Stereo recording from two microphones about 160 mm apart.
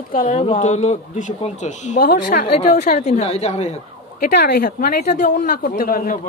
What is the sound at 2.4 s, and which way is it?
Speech, 45° left (ahead or behind).